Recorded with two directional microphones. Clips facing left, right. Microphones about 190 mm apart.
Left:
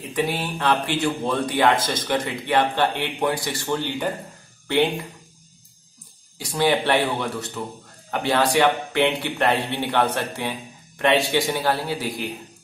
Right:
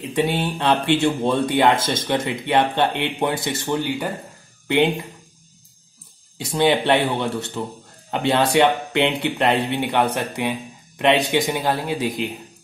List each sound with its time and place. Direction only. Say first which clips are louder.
0.1 s speech: right 3 dB; 25° right (ahead or behind)
3.6 s speech: even; 10° right (ahead or behind)
6.3 s speech: right 2 dB; 20° right (ahead or behind)